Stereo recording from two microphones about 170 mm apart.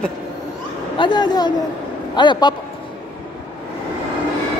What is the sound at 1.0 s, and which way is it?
A woman's voice, 25° left (ahead or behind).